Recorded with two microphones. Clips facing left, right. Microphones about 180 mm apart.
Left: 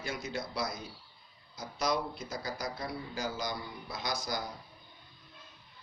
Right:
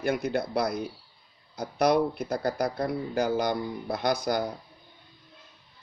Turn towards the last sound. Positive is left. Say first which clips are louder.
# right 10 dB
turn(degrees=-60)  # may be behind; listen again after turning